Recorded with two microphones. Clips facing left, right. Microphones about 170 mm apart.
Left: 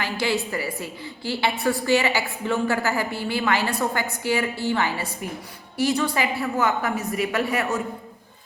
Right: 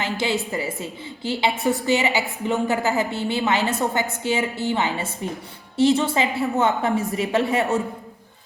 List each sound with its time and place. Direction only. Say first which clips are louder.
0.0 s a woman's voice: right 1 dB; 20° right (ahead or behind)